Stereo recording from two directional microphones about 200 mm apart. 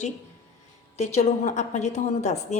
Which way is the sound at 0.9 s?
35° left (ahead or behind).